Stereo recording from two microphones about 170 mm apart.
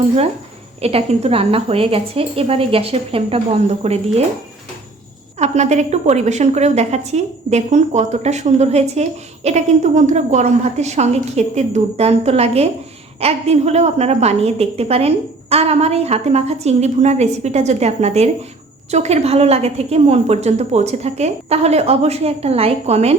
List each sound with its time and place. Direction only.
0.8 s a woman's voice: 35° right (ahead or behind)
5.4 s a woman's voice: 40° right (ahead or behind)